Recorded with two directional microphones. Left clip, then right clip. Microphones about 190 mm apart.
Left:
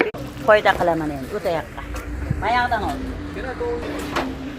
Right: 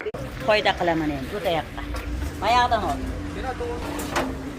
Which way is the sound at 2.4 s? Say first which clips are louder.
Even; 20° right (ahead or behind).